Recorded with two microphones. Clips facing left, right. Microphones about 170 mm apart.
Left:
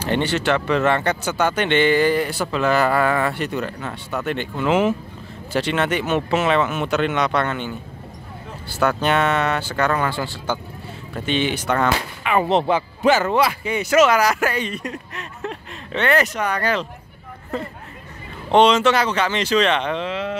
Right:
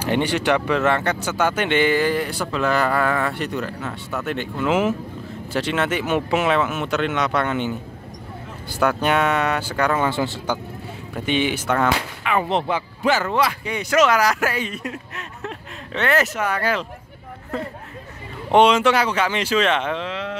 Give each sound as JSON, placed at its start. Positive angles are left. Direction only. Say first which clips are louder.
{"t": 0.0, "sound": "speech", "louder": "even", "side_deg": -10}
{"t": 7.4, "sound": "speech", "louder": "right 3 dB", "side_deg": -15}
{"t": 8.8, "sound": "speech", "louder": "even", "side_deg": -10}
{"t": 12.4, "sound": "speech", "louder": "left 4 dB", "side_deg": 25}
{"t": 13.4, "sound": "speech", "louder": "left 2 dB", "side_deg": 5}
{"t": 18.5, "sound": "speech", "louder": "even", "side_deg": -10}